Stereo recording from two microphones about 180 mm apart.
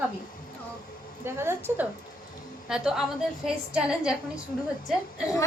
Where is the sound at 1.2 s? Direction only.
15° right (ahead or behind).